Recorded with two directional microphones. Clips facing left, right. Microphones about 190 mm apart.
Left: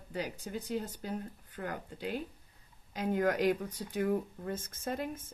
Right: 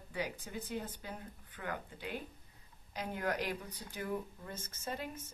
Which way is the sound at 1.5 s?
45° left (ahead or behind).